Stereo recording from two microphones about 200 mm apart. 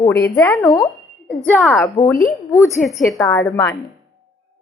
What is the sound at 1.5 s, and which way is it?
Speech, centre (ahead or behind).